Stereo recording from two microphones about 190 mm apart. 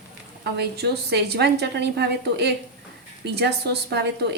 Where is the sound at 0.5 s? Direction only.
60° right (ahead or behind).